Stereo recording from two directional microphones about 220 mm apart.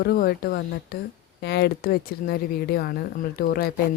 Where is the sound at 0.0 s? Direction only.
45° left (ahead or behind).